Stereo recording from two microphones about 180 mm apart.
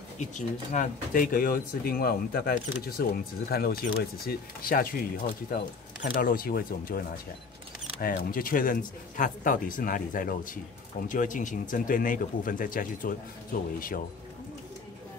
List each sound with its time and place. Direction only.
0.2 s speech: 45° left (ahead or behind)